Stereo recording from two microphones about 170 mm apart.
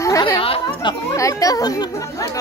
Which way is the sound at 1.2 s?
20° left (ahead or behind).